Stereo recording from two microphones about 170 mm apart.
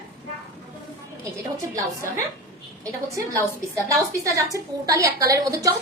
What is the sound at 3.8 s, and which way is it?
A woman's voice, 20° right (ahead or behind).